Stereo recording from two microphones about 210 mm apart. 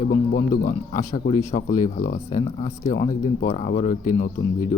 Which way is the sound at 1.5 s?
40° left (ahead or behind).